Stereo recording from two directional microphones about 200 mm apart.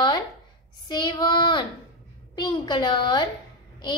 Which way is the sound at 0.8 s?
20° left (ahead or behind).